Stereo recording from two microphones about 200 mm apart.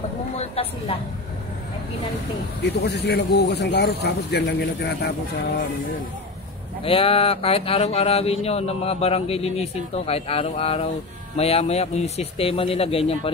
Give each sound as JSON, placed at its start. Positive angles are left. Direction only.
{"t": 0.4, "sound": "a sound", "side_deg": 30}
{"t": 2.6, "sound": "speech", "side_deg": 55}
{"t": 6.8, "sound": "speech", "side_deg": 25}